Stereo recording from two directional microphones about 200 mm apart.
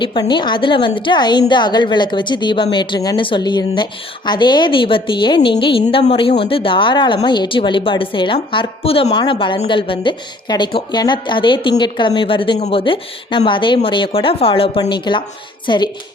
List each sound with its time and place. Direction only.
0.0 s speech: 25° left (ahead or behind)